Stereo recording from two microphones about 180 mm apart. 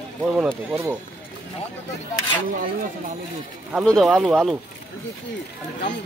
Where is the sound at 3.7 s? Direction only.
Centre (ahead or behind).